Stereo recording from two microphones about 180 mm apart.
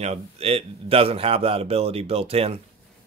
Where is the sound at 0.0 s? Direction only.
35° right (ahead or behind).